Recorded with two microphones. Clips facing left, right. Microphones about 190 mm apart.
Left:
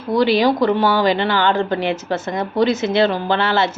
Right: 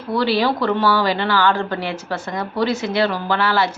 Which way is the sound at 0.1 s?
15° left (ahead or behind).